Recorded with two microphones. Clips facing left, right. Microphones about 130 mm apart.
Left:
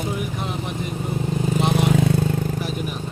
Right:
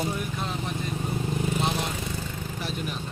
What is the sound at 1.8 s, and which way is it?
Vehicle, 65° left (ahead or behind).